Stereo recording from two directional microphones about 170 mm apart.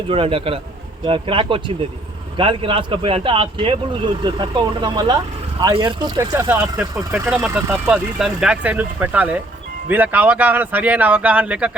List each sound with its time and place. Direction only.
0.1 s speech: 30° right (ahead or behind)
6.3 s speech: 10° right (ahead or behind)